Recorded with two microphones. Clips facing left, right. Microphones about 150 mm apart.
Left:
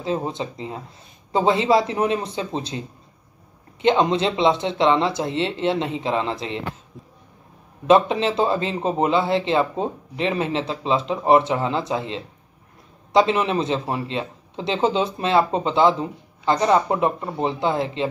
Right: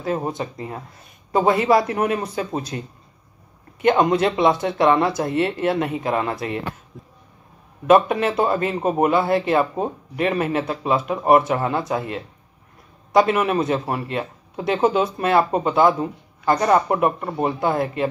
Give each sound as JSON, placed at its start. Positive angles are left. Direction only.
{"t": 0.3, "sound": "speech", "side_deg": 20}
{"t": 4.0, "sound": "speech", "side_deg": 20}
{"t": 7.8, "sound": "speech", "side_deg": 25}